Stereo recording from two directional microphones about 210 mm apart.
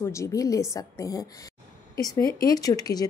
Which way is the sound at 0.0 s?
15° left (ahead or behind).